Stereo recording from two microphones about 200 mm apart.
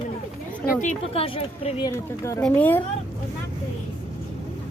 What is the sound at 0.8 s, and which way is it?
A woman's voice, 35° left (ahead or behind).